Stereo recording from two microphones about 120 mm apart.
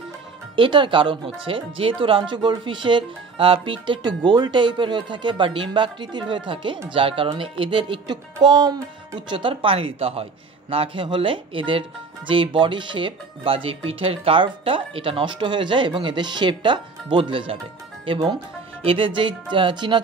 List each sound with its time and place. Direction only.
0.6 s speech: 45° right (ahead or behind)
8.5 s speech: 35° right (ahead or behind)
9.3 s speech: 45° right (ahead or behind)